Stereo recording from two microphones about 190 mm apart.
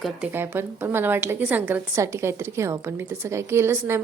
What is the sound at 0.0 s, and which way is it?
A woman's voice, 10° right (ahead or behind).